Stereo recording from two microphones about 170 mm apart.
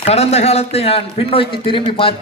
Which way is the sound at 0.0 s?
40° left (ahead or behind).